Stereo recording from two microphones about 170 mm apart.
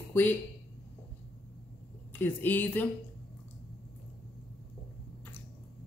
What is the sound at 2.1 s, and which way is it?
Speech, 10° left (ahead or behind).